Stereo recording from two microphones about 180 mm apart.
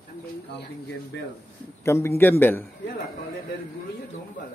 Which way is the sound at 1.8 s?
15° left (ahead or behind).